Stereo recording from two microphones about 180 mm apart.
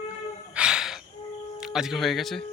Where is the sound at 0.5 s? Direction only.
5° right (ahead or behind).